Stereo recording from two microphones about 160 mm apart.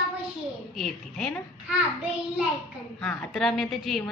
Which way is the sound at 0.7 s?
Centre (ahead or behind).